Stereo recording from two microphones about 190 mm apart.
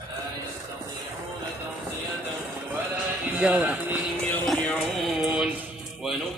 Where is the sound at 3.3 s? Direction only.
5° right (ahead or behind).